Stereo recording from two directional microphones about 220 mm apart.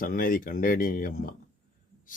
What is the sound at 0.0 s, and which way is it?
Speech, 40° left (ahead or behind).